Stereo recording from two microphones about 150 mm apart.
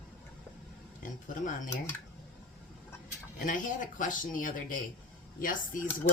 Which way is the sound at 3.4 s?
60° left (ahead or behind).